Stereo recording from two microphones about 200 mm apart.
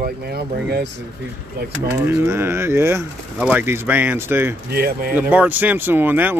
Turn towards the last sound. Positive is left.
turn(degrees=-10)  # may be behind; listen again after turning